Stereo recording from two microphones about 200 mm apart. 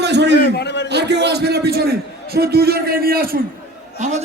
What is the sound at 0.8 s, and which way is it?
A man's voice, 60° right (ahead or behind).